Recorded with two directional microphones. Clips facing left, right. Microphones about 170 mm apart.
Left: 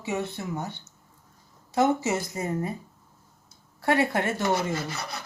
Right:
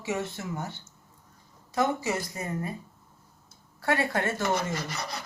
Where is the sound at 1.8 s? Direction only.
25° left (ahead or behind).